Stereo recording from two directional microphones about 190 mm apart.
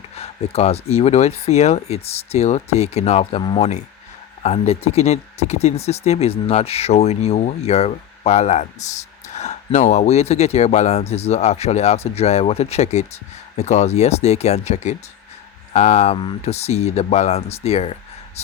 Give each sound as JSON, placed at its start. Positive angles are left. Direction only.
{"t": 0.2, "sound": "speech", "side_deg": 35}